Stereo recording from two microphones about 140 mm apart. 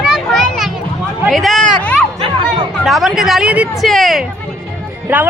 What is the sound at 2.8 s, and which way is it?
Speech, centre (ahead or behind).